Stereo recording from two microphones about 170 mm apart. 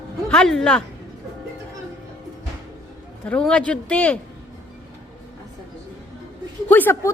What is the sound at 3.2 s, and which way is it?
Speech, 5° left (ahead or behind).